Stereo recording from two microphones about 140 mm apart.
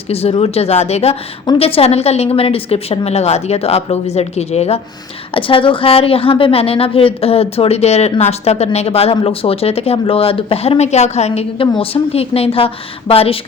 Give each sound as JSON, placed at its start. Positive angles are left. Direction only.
{"t": 0.1, "sound": "a woman's voice", "side_deg": 45}
{"t": 5.3, "sound": "a woman's voice", "side_deg": 40}